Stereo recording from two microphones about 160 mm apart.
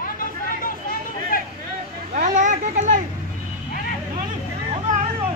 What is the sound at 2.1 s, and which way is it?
Children playing, 50° right (ahead or behind).